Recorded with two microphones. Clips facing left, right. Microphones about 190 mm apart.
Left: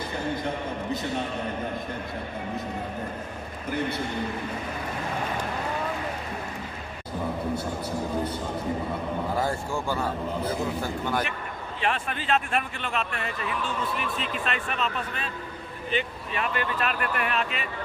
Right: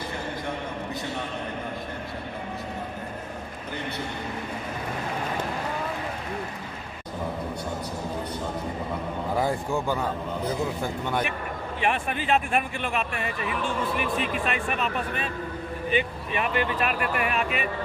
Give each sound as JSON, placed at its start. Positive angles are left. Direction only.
{"t": 9.4, "sound": "speech", "side_deg": -15}
{"t": 11.8, "sound": "speech", "side_deg": -15}
{"t": 14.4, "sound": "speech", "side_deg": -10}